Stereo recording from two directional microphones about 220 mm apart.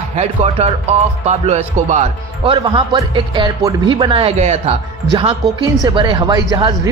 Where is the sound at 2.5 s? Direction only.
20° right (ahead or behind).